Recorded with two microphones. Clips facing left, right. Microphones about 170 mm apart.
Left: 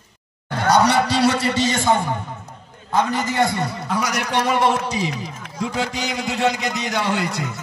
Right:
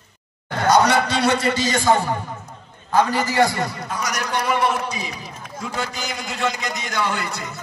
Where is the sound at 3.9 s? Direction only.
75° left (ahead or behind).